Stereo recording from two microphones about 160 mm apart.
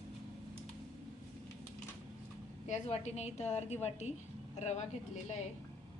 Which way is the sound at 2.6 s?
45° left (ahead or behind).